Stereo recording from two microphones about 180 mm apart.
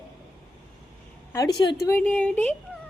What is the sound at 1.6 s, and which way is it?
Speech, 20° left (ahead or behind).